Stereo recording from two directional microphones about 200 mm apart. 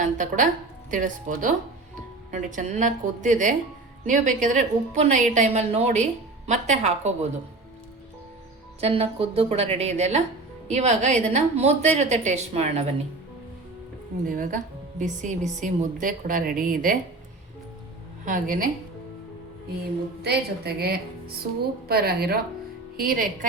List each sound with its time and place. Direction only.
0.0 s a woman's voice: 40° right (ahead or behind)
8.8 s a woman's voice: 30° right (ahead or behind)
14.3 s a woman's voice: 40° right (ahead or behind)
18.3 s a woman's voice: 40° right (ahead or behind)
20.2 s a woman's voice: 50° right (ahead or behind)